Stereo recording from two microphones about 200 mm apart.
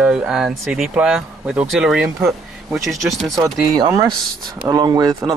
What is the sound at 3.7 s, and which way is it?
Speech, 20° right (ahead or behind).